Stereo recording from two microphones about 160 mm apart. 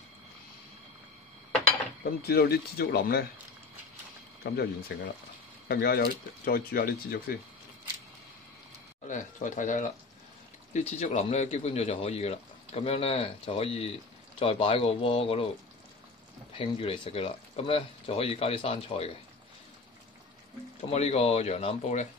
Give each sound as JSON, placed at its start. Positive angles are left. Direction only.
{"t": 2.2, "sound": "speech", "side_deg": 75}
{"t": 4.4, "sound": "speech", "side_deg": 80}
{"t": 9.0, "sound": "speech", "side_deg": 55}
{"t": 16.5, "sound": "speech", "side_deg": 35}
{"t": 20.9, "sound": "speech", "side_deg": 40}